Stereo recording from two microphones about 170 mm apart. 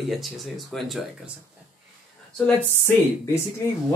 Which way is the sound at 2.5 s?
15° left (ahead or behind).